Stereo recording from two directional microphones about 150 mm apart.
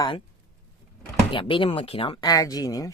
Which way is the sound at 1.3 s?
35° left (ahead or behind).